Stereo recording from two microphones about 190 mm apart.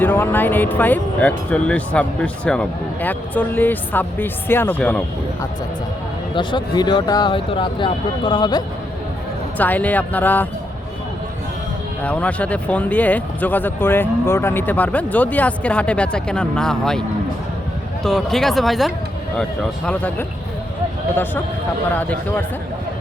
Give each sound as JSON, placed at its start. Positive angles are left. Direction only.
{"t": 0.0, "sound": "speech", "side_deg": 10}
{"t": 6.3, "sound": "speech", "side_deg": 25}
{"t": 9.6, "sound": "speech", "side_deg": 10}
{"t": 12.0, "sound": "speech", "side_deg": 5}
{"t": 18.0, "sound": "speech", "side_deg": 0}
{"t": 21.9, "sound": "speech", "side_deg": 10}